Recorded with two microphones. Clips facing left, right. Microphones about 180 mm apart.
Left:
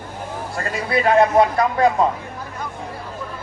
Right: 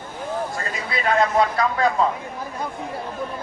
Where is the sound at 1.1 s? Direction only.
25° left (ahead or behind).